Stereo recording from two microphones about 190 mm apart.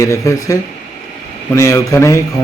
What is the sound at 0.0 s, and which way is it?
A man's voice, 15° left (ahead or behind).